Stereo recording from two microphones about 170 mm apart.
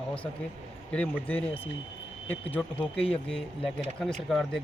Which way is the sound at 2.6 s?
5° left (ahead or behind).